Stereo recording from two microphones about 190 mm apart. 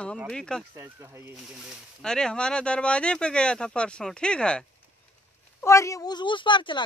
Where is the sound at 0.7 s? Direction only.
15° right (ahead or behind).